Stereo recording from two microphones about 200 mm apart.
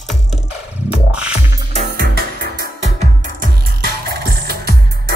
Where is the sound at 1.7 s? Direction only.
40° right (ahead or behind).